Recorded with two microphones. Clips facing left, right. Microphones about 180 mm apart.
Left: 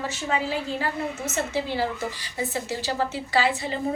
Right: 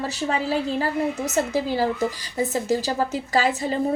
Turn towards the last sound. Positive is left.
turn(degrees=-40)  # may be behind; listen again after turning